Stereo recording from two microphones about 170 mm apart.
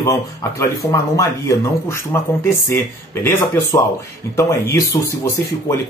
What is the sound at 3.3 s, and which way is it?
Speech, 15° left (ahead or behind).